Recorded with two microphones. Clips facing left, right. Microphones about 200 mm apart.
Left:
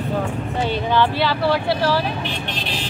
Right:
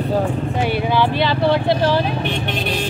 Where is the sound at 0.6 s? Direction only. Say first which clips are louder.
Even; 10° right (ahead or behind).